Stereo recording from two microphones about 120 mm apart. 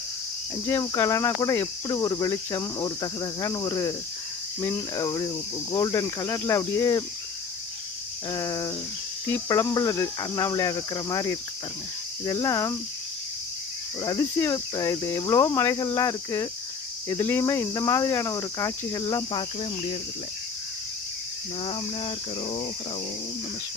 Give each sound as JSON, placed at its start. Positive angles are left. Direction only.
{"t": 0.7, "sound": "speech", "side_deg": 25}
{"t": 8.3, "sound": "speech", "side_deg": 30}
{"t": 14.0, "sound": "speech", "side_deg": 30}
{"t": 19.1, "sound": "cricket", "side_deg": 40}
{"t": 21.6, "sound": "cricket", "side_deg": 50}